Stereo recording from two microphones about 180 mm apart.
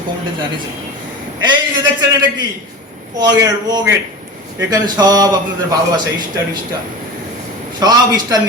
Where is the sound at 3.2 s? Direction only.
20° right (ahead or behind).